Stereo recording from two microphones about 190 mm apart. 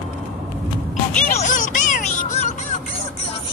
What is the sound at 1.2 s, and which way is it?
Music, 40° left (ahead or behind).